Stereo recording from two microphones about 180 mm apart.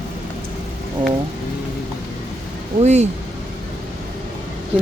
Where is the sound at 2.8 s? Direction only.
40° right (ahead or behind).